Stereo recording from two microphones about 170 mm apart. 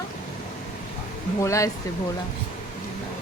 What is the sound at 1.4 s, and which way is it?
Speech, 20° left (ahead or behind).